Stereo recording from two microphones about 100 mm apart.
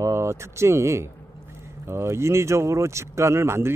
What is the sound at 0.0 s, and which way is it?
Speech, 30° right (ahead or behind).